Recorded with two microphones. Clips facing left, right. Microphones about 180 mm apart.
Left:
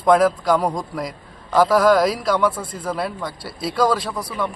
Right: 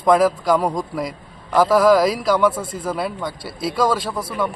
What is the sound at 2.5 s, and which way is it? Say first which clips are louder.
Speech: right 3 dB; 25° right (ahead or behind).